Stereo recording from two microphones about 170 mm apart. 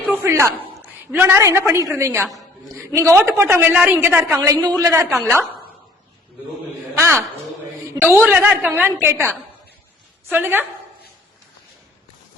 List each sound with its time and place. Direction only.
0.1 s a woman's voice: 15° right (ahead or behind)
5.0 s speech: centre (ahead or behind)
6.9 s a woman's voice: 15° right (ahead or behind)